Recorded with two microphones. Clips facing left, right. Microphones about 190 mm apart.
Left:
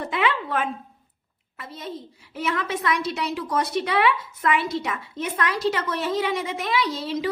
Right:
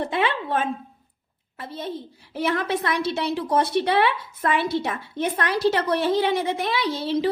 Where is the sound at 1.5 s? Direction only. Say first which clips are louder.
Right 3 dB; 30° right (ahead or behind).